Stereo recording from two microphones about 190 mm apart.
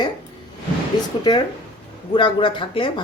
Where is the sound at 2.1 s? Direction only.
25° left (ahead or behind).